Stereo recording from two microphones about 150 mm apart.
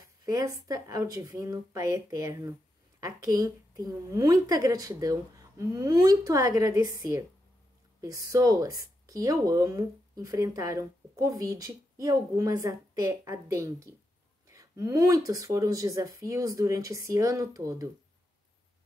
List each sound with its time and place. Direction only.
0.2 s speech: 25° right (ahead or behind)